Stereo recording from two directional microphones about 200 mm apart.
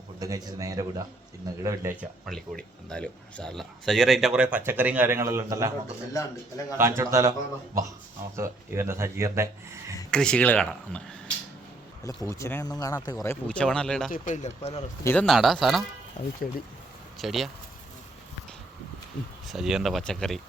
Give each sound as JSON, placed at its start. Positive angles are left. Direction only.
{"t": 0.2, "sound": "speech", "side_deg": -20}
{"t": 2.2, "sound": "speech", "side_deg": 5}
{"t": 6.7, "sound": "speech", "side_deg": -15}
{"t": 8.4, "sound": "speech", "side_deg": -10}
{"t": 10.1, "sound": "speech", "side_deg": 5}
{"t": 12.0, "sound": "speech", "side_deg": 15}
{"t": 14.1, "sound": "speech", "side_deg": 35}
{"t": 15.0, "sound": "speech", "side_deg": 5}
{"t": 17.2, "sound": "speech", "side_deg": 0}
{"t": 19.5, "sound": "speech", "side_deg": 0}